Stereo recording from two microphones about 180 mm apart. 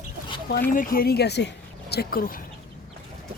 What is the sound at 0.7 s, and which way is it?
Speech, 50° left (ahead or behind).